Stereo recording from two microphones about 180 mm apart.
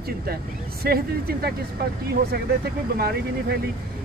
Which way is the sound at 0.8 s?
60° right (ahead or behind).